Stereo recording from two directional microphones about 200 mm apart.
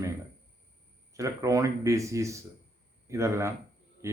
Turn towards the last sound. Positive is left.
turn(degrees=-15)  # may be behind; listen again after turning